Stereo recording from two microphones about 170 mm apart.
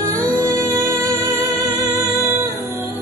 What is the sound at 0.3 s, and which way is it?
Music, 15° right (ahead or behind).